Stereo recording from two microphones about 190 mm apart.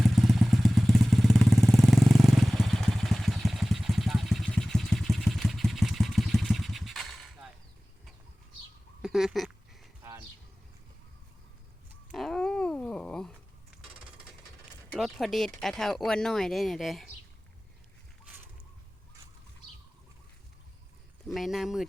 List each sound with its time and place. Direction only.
0.0 s vehicle: centre (ahead or behind)
9.0 s a sound: 5° right (ahead or behind)
10.0 s a sound: 20° right (ahead or behind)
12.1 s dog: centre (ahead or behind)
14.9 s speech: centre (ahead or behind)
21.2 s speech: centre (ahead or behind)